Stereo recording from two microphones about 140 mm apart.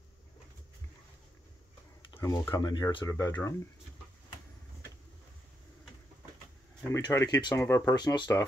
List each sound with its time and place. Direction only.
2.1 s speech: 20° left (ahead or behind)
3.1 s speech: 20° left (ahead or behind)
6.9 s speech: 20° left (ahead or behind)
7.9 s speech: 30° left (ahead or behind)